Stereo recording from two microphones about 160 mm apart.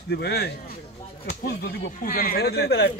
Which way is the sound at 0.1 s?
85° left.